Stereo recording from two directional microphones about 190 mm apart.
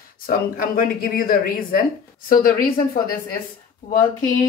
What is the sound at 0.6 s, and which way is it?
A woman's voice, 50° left (ahead or behind).